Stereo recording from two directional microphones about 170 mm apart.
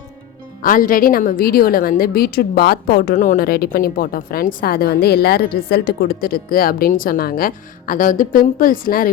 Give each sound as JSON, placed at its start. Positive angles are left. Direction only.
{"t": 0.6, "sound": "a woman's voice", "side_deg": 55}